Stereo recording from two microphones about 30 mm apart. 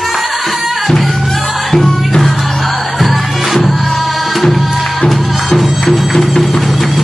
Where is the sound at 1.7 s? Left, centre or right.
Centre.